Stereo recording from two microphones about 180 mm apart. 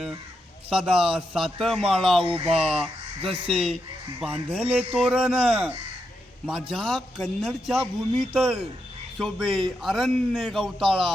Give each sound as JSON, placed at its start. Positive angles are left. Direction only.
{"t": 0.7, "sound": "a man's voice", "side_deg": -5}
{"t": 2.2, "sound": "speech", "side_deg": -30}
{"t": 2.6, "sound": "a man's voice", "side_deg": -5}
{"t": 3.2, "sound": "speech", "side_deg": -30}
{"t": 4.2, "sound": "a man's voice", "side_deg": -5}